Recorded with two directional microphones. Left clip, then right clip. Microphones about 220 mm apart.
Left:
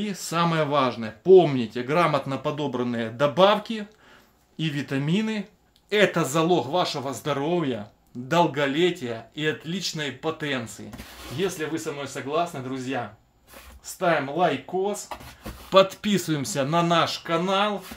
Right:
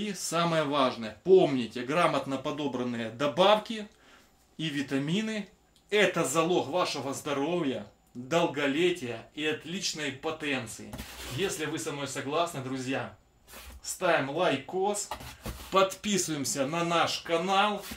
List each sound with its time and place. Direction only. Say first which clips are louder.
0.0 s speech: left 4 dB; 45° left (ahead or behind)
15.7 s speech: left 7 dB; 45° left (ahead or behind)